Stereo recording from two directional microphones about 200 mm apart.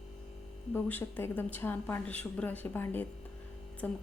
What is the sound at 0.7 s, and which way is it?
A woman's voice, 10° left (ahead or behind).